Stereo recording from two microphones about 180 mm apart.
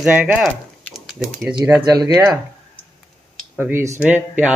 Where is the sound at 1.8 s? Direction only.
20° right (ahead or behind).